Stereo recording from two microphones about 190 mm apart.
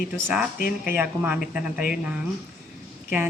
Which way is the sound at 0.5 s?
50° left (ahead or behind).